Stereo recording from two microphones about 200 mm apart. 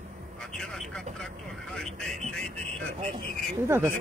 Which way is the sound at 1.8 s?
Centre (ahead or behind).